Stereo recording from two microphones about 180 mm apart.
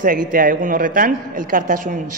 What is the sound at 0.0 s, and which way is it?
A man's voice, 50° right (ahead or behind).